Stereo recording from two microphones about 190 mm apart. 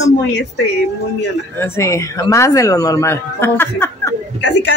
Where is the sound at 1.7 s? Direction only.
15° left (ahead or behind).